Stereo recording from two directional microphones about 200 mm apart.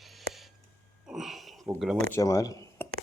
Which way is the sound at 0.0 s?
Centre (ahead or behind).